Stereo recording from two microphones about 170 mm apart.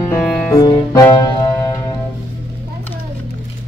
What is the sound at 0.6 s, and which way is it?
Music, 20° left (ahead or behind).